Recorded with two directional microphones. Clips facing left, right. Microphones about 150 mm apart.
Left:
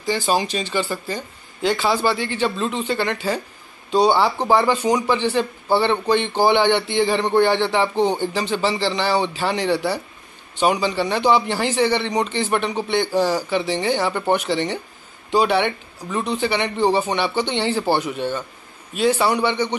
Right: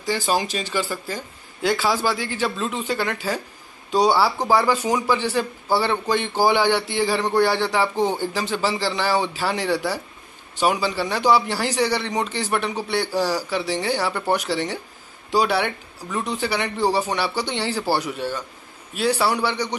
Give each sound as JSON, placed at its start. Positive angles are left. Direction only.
{"t": 0.0, "sound": "speech", "side_deg": 20}
{"t": 0.4, "sound": "a man's voice", "side_deg": -5}
{"t": 4.5, "sound": "a man's voice", "side_deg": -10}
{"t": 13.1, "sound": "speech", "side_deg": 20}
{"t": 13.5, "sound": "speech", "side_deg": -5}
{"t": 19.2, "sound": "speech", "side_deg": -5}